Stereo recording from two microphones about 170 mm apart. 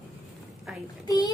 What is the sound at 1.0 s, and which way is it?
Speech, 20° left (ahead or behind).